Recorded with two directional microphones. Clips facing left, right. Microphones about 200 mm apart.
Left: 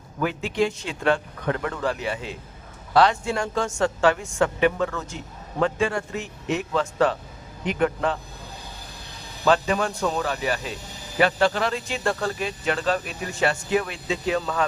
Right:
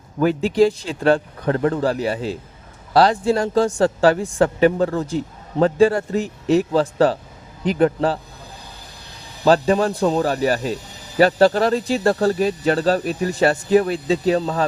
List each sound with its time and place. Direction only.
0.2 s a woman's voice: 35° right (ahead or behind)
9.4 s a woman's voice: 35° right (ahead or behind)